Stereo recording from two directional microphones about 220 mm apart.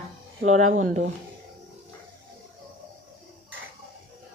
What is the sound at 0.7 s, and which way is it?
Speech, 35° right (ahead or behind).